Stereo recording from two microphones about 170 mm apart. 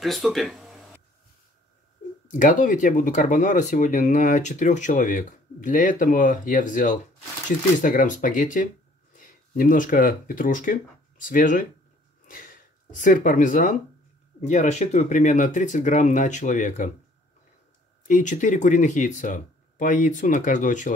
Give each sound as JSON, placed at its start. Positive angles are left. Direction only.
{"t": 0.0, "sound": "speech", "side_deg": 0}
{"t": 2.3, "sound": "speech", "side_deg": 50}
{"t": 13.0, "sound": "speech", "side_deg": 50}
{"t": 18.0, "sound": "speech", "side_deg": 50}